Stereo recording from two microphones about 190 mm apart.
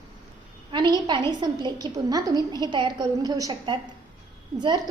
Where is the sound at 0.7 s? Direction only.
25° right (ahead or behind).